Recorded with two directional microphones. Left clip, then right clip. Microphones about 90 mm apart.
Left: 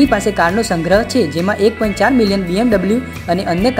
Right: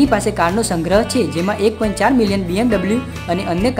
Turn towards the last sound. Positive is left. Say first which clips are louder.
# left 3 dB
turn(degrees=15)  # may be behind; listen again after turning